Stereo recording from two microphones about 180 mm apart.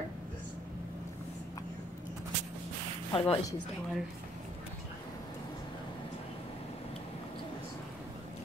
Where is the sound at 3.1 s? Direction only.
30° left (ahead or behind).